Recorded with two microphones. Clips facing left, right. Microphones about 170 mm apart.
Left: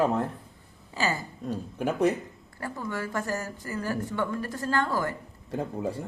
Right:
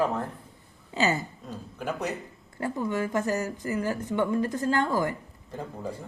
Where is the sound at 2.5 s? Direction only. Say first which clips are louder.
Right 5 dB; 20° right (ahead or behind).